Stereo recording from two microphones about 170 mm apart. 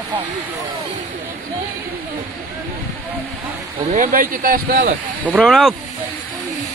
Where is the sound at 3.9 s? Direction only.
50° right (ahead or behind).